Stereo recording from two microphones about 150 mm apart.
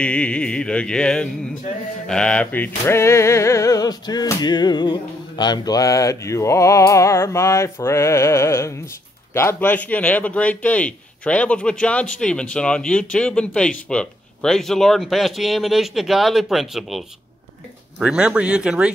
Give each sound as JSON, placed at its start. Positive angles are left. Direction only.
{"t": 0.0, "sound": "a man's voice", "side_deg": 10}
{"t": 2.0, "sound": "a sound", "side_deg": 5}
{"t": 9.3, "sound": "a man's voice", "side_deg": 15}